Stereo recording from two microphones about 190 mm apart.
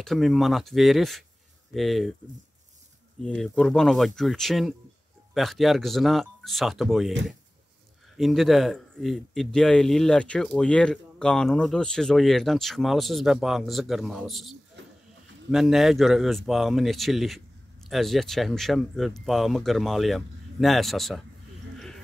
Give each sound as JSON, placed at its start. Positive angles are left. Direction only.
{"t": 0.0, "sound": "speech", "side_deg": 0}
{"t": 3.2, "sound": "speech", "side_deg": 5}
{"t": 8.2, "sound": "speech", "side_deg": 0}
{"t": 14.8, "sound": "a sound", "side_deg": -70}
{"t": 15.5, "sound": "speech", "side_deg": 0}
{"t": 21.7, "sound": "a sound", "side_deg": 0}